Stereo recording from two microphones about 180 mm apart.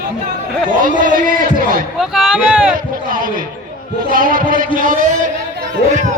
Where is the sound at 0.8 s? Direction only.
50° right (ahead or behind).